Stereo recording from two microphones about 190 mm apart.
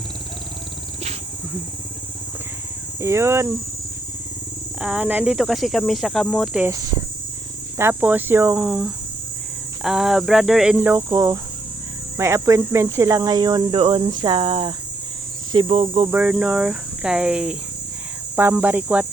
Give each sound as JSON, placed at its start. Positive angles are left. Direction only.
{"t": 3.0, "sound": "speech", "side_deg": -15}
{"t": 4.8, "sound": "speech", "side_deg": -5}
{"t": 7.8, "sound": "speech", "side_deg": -10}
{"t": 16.1, "sound": "speech", "side_deg": -5}